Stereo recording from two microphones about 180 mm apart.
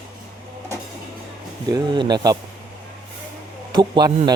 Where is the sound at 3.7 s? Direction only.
25° right (ahead or behind).